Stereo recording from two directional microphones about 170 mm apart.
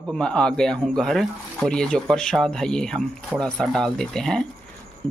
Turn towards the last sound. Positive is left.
turn(degrees=5)  # may be behind; listen again after turning